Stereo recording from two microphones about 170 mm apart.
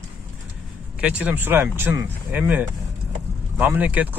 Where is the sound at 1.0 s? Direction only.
10° right (ahead or behind).